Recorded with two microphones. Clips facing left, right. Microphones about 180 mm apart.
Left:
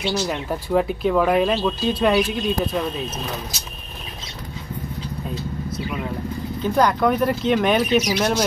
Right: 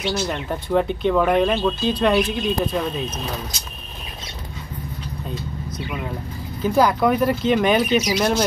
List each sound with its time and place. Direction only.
0.0 s speech: 5° left (ahead or behind)
6.6 s speech: 5° right (ahead or behind)